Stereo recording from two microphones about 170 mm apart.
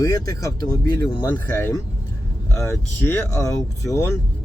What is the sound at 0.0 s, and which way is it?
Speech, 20° left (ahead or behind).